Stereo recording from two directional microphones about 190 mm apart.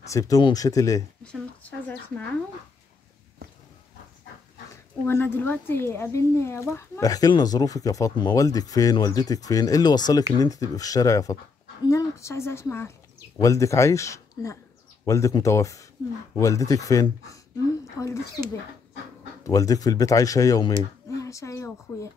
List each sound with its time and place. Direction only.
0.0 s speech: 15° left (ahead or behind)
1.2 s speech: 5° left (ahead or behind)
5.0 s speech: 10° left (ahead or behind)
19.4 s speech: 20° left (ahead or behind)